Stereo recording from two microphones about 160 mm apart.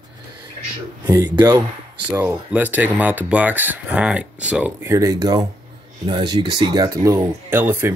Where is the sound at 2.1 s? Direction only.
15° right (ahead or behind).